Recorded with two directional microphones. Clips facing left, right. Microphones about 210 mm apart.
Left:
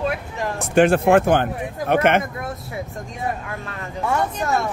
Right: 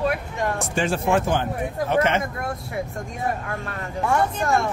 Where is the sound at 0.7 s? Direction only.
60° left (ahead or behind).